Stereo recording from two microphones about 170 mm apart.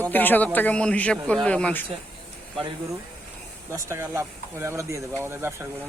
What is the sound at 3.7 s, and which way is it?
Speech, 15° right (ahead or behind).